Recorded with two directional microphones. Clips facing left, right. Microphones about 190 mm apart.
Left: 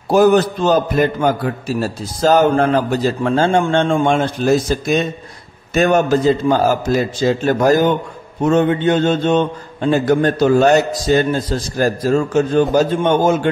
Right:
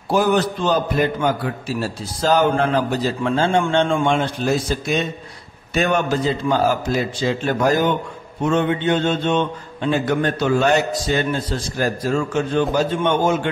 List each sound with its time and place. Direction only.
0.1 s a man's voice: 45° left (ahead or behind)